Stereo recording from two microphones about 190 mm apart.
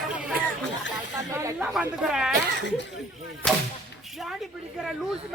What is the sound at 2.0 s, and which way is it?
Speech, 5° right (ahead or behind).